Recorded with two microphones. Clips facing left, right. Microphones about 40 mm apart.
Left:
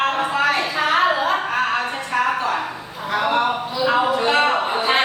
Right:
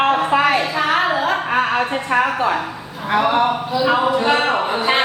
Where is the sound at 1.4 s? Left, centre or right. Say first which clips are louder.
Right 3 dB; right.